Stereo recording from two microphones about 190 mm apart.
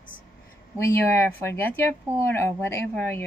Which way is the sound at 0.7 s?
15° left (ahead or behind).